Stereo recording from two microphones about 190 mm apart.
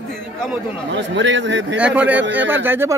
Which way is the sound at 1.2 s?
70° right (ahead or behind).